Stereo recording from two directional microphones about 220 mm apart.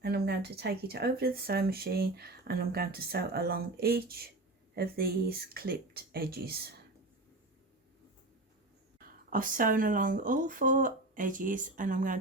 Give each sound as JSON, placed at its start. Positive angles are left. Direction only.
{"t": 0.0, "sound": "speech", "side_deg": -45}
{"t": 9.0, "sound": "speech", "side_deg": -40}